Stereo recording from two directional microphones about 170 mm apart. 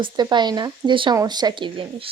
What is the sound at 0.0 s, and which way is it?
Speech, 25° right (ahead or behind).